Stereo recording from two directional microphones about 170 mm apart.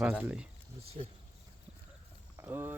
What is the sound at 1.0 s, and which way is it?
Speech, 35° right (ahead or behind).